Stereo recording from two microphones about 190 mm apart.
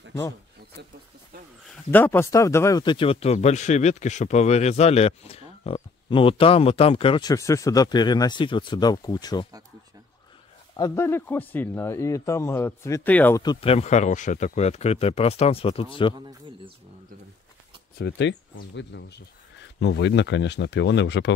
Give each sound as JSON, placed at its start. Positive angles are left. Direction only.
{"t": 1.9, "sound": "speech", "side_deg": 10}
{"t": 10.8, "sound": "a man's voice", "side_deg": 15}
{"t": 13.4, "sound": "speech", "side_deg": 25}
{"t": 17.9, "sound": "speech", "side_deg": 65}